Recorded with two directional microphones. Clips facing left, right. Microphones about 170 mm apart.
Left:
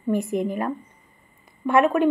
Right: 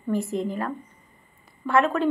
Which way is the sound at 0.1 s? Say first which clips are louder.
Left 3 dB; 15° left (ahead or behind).